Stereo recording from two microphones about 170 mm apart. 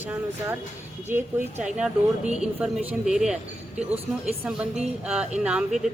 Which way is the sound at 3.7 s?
35° right (ahead or behind).